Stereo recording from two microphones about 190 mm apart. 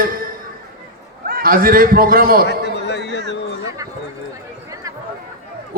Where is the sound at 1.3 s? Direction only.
50° right (ahead or behind).